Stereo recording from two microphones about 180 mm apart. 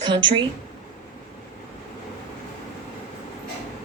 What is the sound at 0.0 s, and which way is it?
Speech, 25° right (ahead or behind).